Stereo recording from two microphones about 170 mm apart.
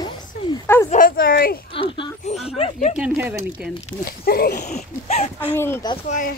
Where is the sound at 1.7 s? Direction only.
30° left (ahead or behind).